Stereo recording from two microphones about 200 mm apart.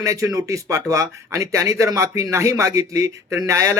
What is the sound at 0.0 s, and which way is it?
Speech, 15° right (ahead or behind).